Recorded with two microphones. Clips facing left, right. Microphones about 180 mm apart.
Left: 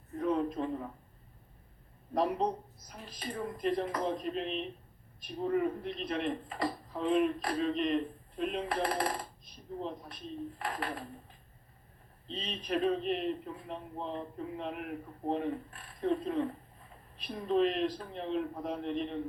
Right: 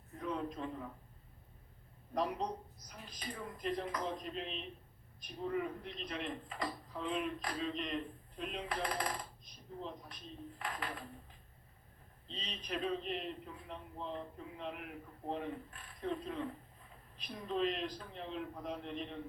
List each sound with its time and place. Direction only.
0.2 s a sound: 55° left (ahead or behind)
2.1 s speech: 55° left (ahead or behind)
10.6 s speech: 60° left (ahead or behind)
12.3 s speech: 55° left (ahead or behind)